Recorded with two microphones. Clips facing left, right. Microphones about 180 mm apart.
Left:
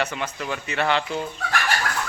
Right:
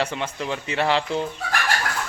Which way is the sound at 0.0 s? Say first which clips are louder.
Right 1 dB; 25° right (ahead or behind).